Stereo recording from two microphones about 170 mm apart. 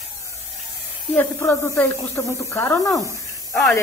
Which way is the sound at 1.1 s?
15° left (ahead or behind).